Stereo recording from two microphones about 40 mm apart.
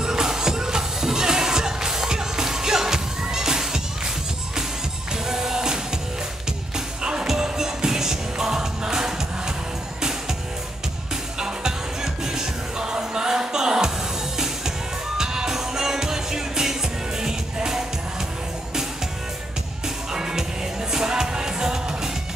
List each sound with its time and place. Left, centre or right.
0.0 s music: centre
5.3 s music: centre
7.0 s music: centre
11.3 s music: centre
15.1 s music: centre
20.9 s music: centre